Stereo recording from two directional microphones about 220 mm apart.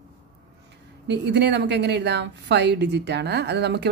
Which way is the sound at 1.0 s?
50° right (ahead or behind).